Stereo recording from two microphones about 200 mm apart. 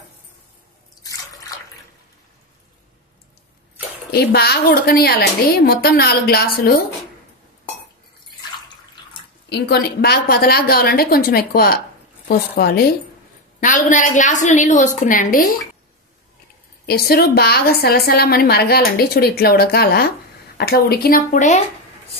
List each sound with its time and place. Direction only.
1.5 s water: 20° left (ahead or behind)
4.1 s a woman's voice: 55° left (ahead or behind)
9.5 s a woman's voice: 55° left (ahead or behind)
16.8 s a woman's voice: 50° left (ahead or behind)